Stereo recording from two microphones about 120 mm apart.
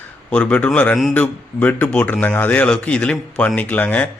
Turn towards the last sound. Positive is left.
turn(degrees=10)  # may be behind; listen again after turning